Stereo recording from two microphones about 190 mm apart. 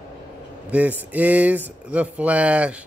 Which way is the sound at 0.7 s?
10° right (ahead or behind).